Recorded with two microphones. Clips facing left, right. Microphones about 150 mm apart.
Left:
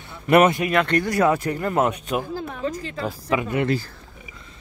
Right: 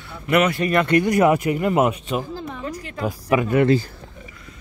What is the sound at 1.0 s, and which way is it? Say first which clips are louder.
Speech: right 3 dB; 15° right (ahead or behind).